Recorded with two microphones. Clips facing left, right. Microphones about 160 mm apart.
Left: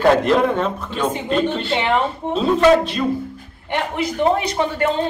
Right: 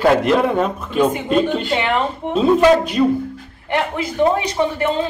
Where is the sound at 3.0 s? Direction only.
10° right (ahead or behind).